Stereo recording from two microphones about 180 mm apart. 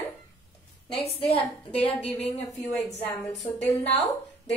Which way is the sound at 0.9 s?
30° left (ahead or behind).